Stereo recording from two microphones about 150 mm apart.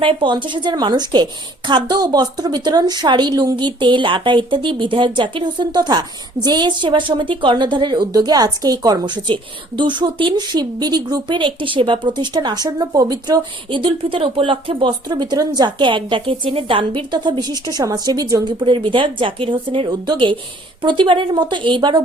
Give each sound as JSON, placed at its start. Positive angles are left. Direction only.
{"t": 0.0, "sound": "a woman's voice", "side_deg": -35}